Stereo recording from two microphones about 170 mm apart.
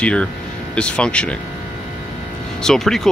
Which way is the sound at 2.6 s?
Centre (ahead or behind).